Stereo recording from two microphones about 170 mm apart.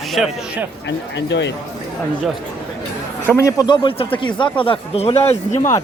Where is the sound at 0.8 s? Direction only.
90° left.